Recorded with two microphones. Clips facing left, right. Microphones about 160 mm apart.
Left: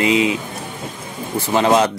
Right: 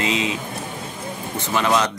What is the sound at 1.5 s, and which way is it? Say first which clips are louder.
Speech: left 5 dB; 25° left (ahead or behind).